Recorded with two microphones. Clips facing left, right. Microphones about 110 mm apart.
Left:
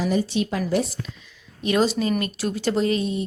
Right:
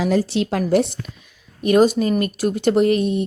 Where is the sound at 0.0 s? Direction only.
90° right.